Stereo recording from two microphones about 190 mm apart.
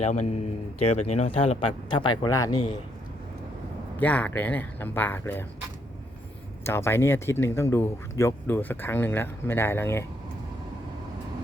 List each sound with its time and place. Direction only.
0.0 s a man's voice: 35° left (ahead or behind); by 2.7 s 20° left (ahead or behind)
4.0 s speech: 10° left (ahead or behind)
6.7 s speech: 15° left (ahead or behind)